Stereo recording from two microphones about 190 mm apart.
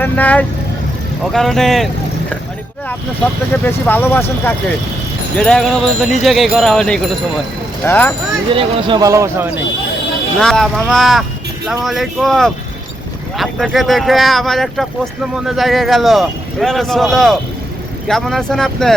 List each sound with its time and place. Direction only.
0.0 s speech: 10° left (ahead or behind)
3.5 s speech: 10° left (ahead or behind)
8.5 s speech: 20° right (ahead or behind)
10.4 s speech: 5° left (ahead or behind)